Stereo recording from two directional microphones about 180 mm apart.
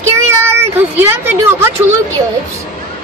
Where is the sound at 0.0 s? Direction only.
15° right (ahead or behind).